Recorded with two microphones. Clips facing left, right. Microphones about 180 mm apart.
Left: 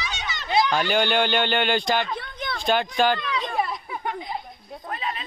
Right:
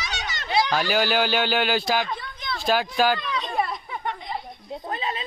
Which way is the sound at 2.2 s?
60° left (ahead or behind).